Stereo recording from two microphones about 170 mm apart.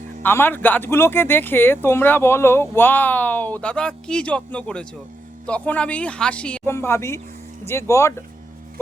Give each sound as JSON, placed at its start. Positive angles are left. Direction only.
{"t": 0.2, "sound": "speech", "side_deg": 10}